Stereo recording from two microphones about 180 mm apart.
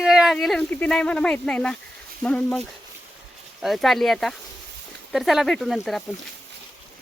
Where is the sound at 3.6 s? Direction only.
Centre (ahead or behind).